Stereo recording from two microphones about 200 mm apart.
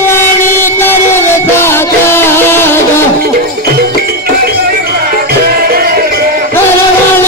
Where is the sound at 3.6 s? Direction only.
50° right (ahead or behind).